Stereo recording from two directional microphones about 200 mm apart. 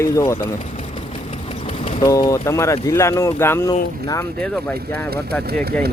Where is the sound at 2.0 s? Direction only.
20° left (ahead or behind).